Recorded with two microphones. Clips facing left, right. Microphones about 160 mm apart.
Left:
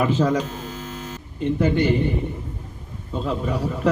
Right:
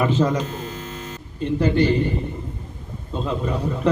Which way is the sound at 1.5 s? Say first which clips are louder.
Right 2 dB; 20° left (ahead or behind).